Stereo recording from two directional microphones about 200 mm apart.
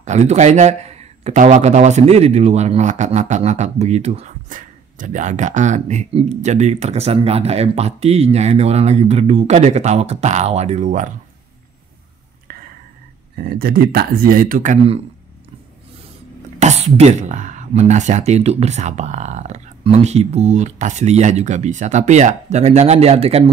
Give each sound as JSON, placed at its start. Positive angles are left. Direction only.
{"t": 0.0, "sound": "speech", "side_deg": -35}
{"t": 13.4, "sound": "speech", "side_deg": -50}
{"t": 16.5, "sound": "speech", "side_deg": -35}